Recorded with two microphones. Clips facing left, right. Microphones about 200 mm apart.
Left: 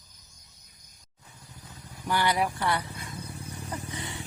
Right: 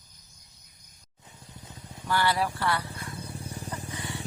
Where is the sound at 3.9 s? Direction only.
20° left (ahead or behind).